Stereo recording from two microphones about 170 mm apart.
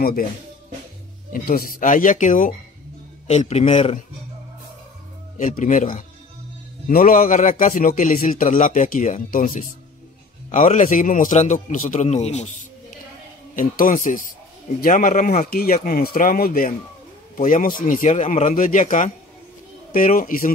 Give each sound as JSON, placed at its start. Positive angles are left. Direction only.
{"t": 0.0, "sound": "speech", "side_deg": 55}
{"t": 1.3, "sound": "a man's voice", "side_deg": 60}
{"t": 5.4, "sound": "speech", "side_deg": 45}
{"t": 6.9, "sound": "speech", "side_deg": 55}
{"t": 13.6, "sound": "speech", "side_deg": 50}